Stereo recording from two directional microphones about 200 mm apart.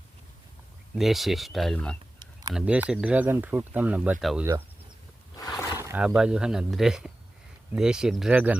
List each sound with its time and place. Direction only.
0.9 s speech: centre (ahead or behind)
5.4 s wild animals: 15° left (ahead or behind)
5.9 s speech: 5° right (ahead or behind)